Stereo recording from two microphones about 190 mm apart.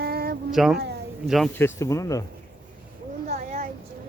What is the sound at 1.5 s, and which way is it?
Speech, 15° left (ahead or behind).